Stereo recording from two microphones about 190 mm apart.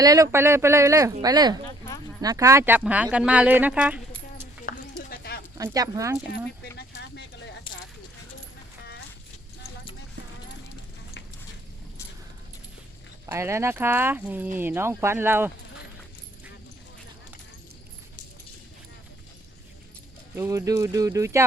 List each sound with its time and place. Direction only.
0.0 s speech: 20° right (ahead or behind)
4.7 s a sound: 45° left (ahead or behind)
5.5 s speech: 20° right (ahead or behind)
6.3 s speech: 60° left (ahead or behind)
13.2 s speech: 15° right (ahead or behind)
20.3 s speech: 15° right (ahead or behind)